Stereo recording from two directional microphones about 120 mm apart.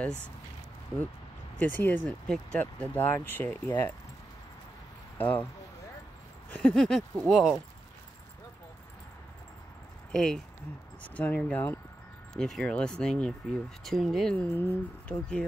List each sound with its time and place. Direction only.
1.6 s speech: 15° left (ahead or behind)
5.1 s a sound: 15° left (ahead or behind)
6.5 s speech: 5° left (ahead or behind)
10.1 s speech: 5° left (ahead or behind)
12.4 s speech: 5° left (ahead or behind)
14.4 s speech: 20° left (ahead or behind)